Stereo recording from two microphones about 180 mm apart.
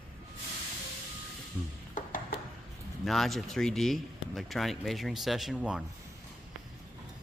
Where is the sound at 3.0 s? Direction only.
Centre (ahead or behind).